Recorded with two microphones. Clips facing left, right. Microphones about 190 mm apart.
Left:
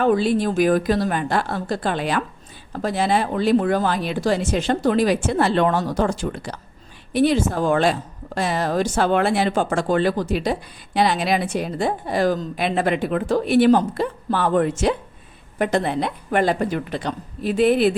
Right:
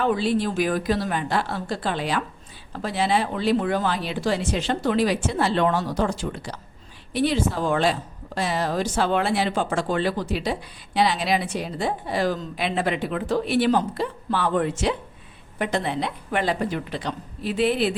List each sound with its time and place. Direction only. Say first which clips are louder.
0.0 s speech: left 4 dB; 50° left (ahead or behind)